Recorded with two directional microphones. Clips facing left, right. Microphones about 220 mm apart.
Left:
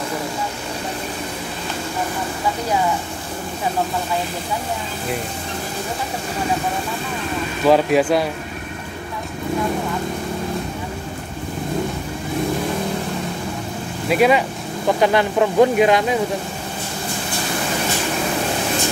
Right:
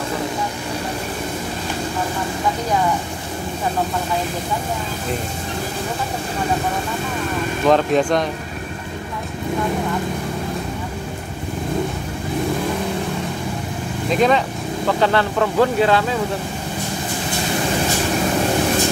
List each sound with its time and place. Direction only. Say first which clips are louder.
7.6 s speech: left 1 dB; 5° left (ahead or behind)
14.0 s speech: left 1 dB; 10° left (ahead or behind)